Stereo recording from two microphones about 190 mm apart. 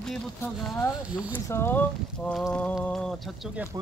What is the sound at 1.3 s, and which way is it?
Speech, 10° left (ahead or behind).